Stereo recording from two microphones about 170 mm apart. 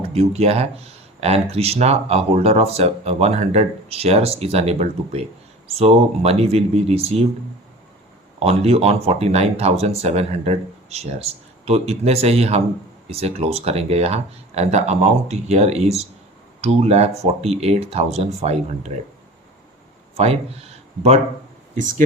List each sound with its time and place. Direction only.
0.1 s speech: 35° right (ahead or behind)
8.4 s speech: 35° right (ahead or behind)
20.1 s speech: 35° right (ahead or behind)